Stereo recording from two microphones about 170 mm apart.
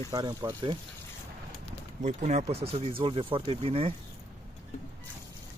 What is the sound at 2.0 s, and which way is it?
Speech, 45° right (ahead or behind).